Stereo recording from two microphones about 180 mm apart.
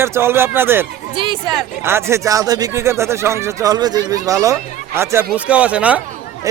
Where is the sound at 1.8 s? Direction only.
15° right (ahead or behind).